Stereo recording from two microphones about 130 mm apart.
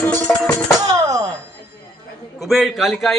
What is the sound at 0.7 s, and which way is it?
Music, 25° right (ahead or behind).